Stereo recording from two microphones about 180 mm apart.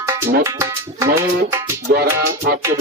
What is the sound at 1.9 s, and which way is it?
Speech, 60° right (ahead or behind).